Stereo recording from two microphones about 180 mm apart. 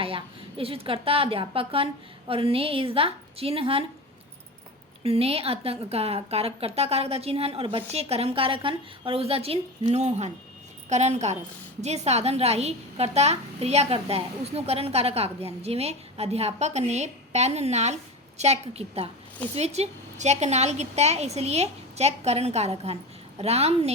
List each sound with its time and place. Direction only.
0.0 s a woman's voice: 30° right (ahead or behind)
5.0 s a woman's voice: 35° right (ahead or behind)